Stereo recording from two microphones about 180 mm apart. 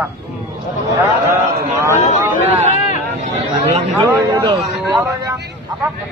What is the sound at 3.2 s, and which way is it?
Speech, 35° right (ahead or behind).